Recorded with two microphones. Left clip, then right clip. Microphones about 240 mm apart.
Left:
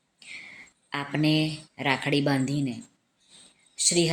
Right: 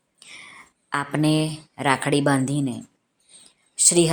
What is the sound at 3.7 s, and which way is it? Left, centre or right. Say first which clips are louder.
Speech: right 5 dB; right.